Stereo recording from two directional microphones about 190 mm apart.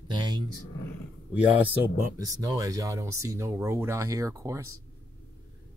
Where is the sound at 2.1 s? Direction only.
20° right (ahead or behind).